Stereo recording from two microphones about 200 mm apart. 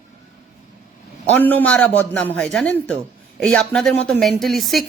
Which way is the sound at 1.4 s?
10° left (ahead or behind).